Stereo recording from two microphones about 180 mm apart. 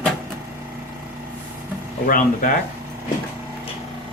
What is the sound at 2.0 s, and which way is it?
Speech, 50° left (ahead or behind).